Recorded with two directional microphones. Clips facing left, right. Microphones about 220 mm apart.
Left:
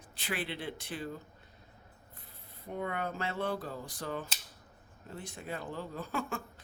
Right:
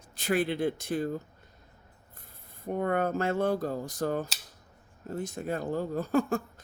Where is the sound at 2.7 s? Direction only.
50° right (ahead or behind).